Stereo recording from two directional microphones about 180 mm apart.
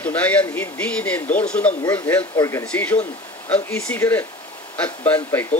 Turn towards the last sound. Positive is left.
turn(degrees=10)  # may be behind; listen again after turning